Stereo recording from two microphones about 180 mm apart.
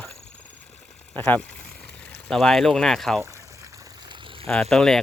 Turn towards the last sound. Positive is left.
turn(degrees=0)  # may be behind; listen again after turning